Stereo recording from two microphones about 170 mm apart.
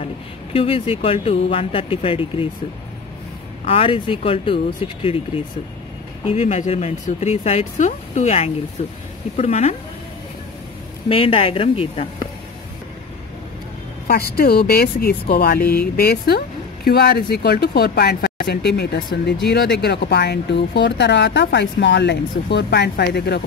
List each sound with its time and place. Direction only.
0.0 s speech: 35° left (ahead or behind)
3.6 s speech: 35° left (ahead or behind)
11.1 s speech: 35° left (ahead or behind)
14.0 s a woman's voice: 65° left (ahead or behind)